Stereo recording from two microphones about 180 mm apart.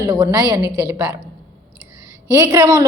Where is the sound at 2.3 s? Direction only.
20° right (ahead or behind).